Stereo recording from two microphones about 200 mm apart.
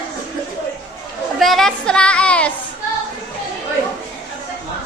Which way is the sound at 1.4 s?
Centre (ahead or behind).